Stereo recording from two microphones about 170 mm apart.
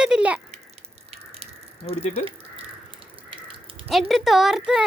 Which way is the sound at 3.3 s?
30° right (ahead or behind).